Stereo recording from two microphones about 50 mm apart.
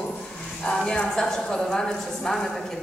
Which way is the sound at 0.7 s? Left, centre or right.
Centre.